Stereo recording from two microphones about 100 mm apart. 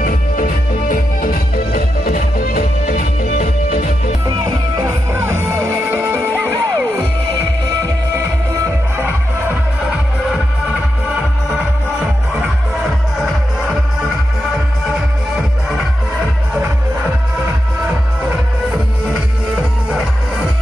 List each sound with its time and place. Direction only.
5.2 s music: 25° right (ahead or behind)
12.4 s music: 5° right (ahead or behind)